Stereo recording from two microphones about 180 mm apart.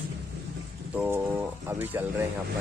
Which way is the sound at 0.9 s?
10° right (ahead or behind).